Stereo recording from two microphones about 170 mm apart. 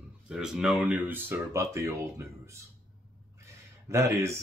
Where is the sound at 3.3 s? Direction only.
15° right (ahead or behind).